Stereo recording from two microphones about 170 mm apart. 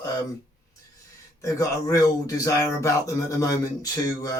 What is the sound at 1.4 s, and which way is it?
Speech, 20° left (ahead or behind).